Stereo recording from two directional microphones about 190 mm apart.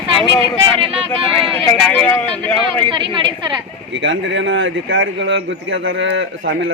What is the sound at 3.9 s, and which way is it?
Speech, 75° right (ahead or behind).